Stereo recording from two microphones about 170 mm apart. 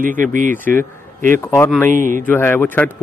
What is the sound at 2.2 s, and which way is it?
Speech, 10° left (ahead or behind).